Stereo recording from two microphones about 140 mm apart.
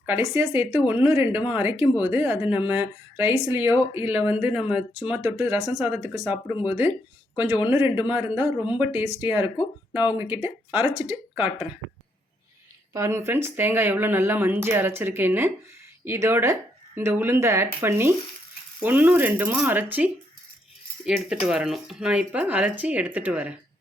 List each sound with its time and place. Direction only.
0.0 s speech: 15° right (ahead or behind)
5.6 s speech: centre (ahead or behind)
5.9 s speech: 15° right (ahead or behind)
12.9 s speech: 20° right (ahead or behind)